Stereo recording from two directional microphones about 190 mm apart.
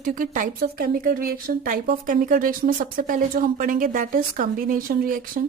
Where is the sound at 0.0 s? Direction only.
45° right (ahead or behind).